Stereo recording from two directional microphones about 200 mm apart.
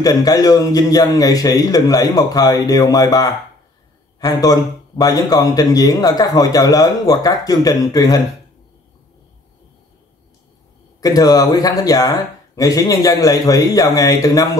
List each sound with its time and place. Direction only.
0.0 s a man's voice: 20° left (ahead or behind)
11.0 s speech: 20° left (ahead or behind)